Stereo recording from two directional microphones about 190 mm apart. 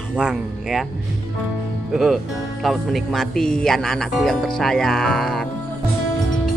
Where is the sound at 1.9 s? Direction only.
Centre (ahead or behind).